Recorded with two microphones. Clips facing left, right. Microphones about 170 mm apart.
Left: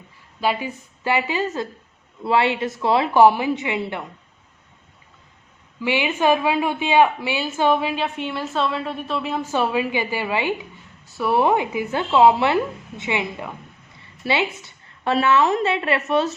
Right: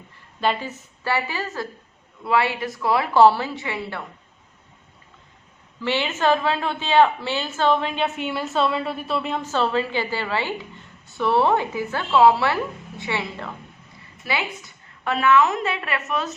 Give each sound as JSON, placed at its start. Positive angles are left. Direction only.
{"t": 0.4, "sound": "a woman's voice", "side_deg": 10}
{"t": 5.8, "sound": "a woman's voice", "side_deg": 15}
{"t": 8.0, "sound": "a woman's voice", "side_deg": -5}